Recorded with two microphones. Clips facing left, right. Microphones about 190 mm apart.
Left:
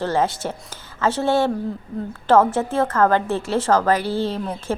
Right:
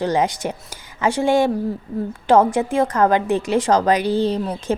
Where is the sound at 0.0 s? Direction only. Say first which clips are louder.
Right 2 dB; 15° right (ahead or behind).